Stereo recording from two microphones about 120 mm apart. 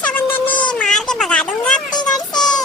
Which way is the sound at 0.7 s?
5° left (ahead or behind).